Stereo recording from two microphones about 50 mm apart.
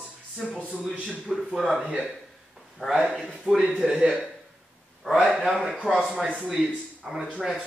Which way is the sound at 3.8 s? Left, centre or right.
Centre.